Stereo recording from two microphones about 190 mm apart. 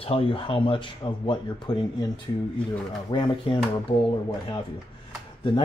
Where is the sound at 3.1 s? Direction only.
25° left (ahead or behind).